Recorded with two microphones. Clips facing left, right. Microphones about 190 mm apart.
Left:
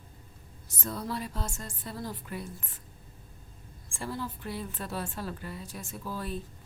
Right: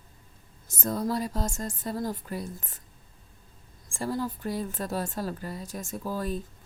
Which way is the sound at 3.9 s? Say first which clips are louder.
Right 6 dB; 40° right (ahead or behind).